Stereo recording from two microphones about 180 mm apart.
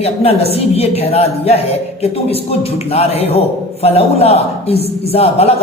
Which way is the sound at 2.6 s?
35° left (ahead or behind).